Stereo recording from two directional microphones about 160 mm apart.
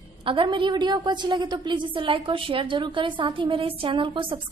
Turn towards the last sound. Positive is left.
turn(degrees=-30)  # may be behind; listen again after turning